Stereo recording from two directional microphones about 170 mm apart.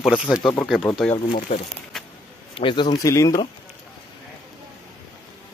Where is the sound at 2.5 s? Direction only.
30° left (ahead or behind).